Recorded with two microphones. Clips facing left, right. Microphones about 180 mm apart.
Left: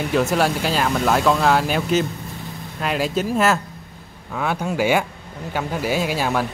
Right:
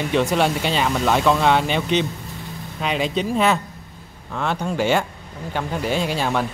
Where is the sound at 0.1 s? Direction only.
Centre (ahead or behind).